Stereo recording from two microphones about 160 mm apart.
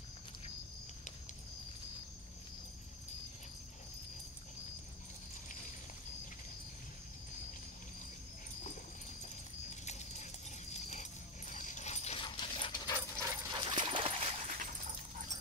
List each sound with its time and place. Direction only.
9.2 s horse: 45° left (ahead or behind)
10.7 s dog: 45° left (ahead or behind); by 12.9 s 30° left (ahead or behind)
13.2 s dog: 20° right (ahead or behind)
13.6 s dog: 30° right (ahead or behind); by 15.2 s 55° right (ahead or behind)